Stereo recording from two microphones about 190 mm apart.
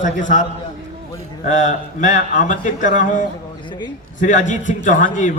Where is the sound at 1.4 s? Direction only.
40° left (ahead or behind).